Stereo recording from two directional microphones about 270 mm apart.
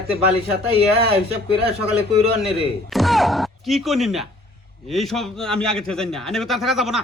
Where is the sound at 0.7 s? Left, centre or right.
Right.